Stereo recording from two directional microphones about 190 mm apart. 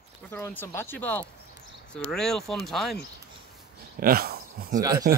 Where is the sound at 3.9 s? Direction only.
50° right (ahead or behind).